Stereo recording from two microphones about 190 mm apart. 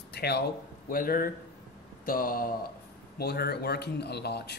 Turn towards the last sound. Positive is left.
turn(degrees=60)  # may be behind; listen again after turning